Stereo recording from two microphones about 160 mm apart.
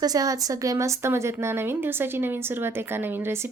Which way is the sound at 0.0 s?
25° right (ahead or behind).